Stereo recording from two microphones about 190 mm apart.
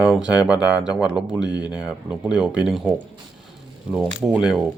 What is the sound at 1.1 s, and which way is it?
Speech, 20° left (ahead or behind).